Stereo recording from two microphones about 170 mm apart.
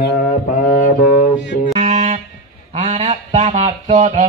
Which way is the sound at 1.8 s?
45° right (ahead or behind).